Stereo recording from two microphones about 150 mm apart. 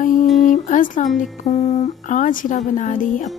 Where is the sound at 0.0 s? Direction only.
60° left (ahead or behind).